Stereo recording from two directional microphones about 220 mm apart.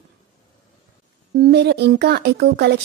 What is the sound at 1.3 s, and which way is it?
Speech, 45° right (ahead or behind).